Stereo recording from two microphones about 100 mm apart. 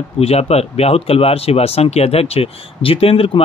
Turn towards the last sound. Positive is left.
turn(degrees=70)  # may be behind; listen again after turning